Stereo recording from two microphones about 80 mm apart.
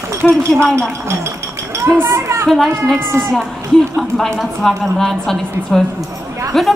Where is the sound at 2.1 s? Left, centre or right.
Right.